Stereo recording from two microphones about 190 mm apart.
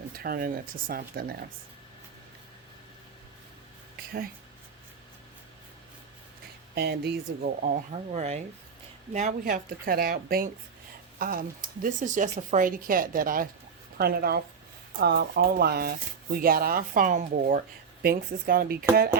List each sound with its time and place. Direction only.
0.2 s speech: 50° right (ahead or behind)
6.7 s a woman's voice: 60° right (ahead or behind)
7.6 s a woman's voice: 40° right (ahead or behind)